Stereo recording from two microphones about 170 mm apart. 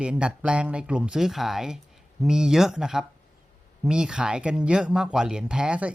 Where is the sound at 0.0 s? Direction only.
5° right (ahead or behind).